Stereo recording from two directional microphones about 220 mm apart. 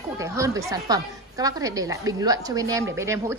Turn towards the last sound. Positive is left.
turn(degrees=-10)  # may be behind; listen again after turning